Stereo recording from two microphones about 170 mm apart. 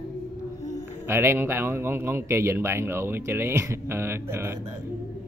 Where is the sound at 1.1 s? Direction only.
15° right (ahead or behind).